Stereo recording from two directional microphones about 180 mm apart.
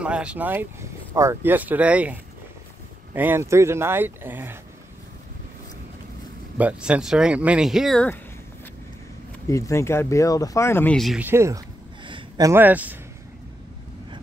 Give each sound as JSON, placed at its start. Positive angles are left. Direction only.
{"t": 0.0, "sound": "speech", "side_deg": -5}
{"t": 3.2, "sound": "speech", "side_deg": -10}
{"t": 6.6, "sound": "speech", "side_deg": -5}
{"t": 9.5, "sound": "speech", "side_deg": 15}
{"t": 11.2, "sound": "speech", "side_deg": -15}
{"t": 12.0, "sound": "a sound", "side_deg": -25}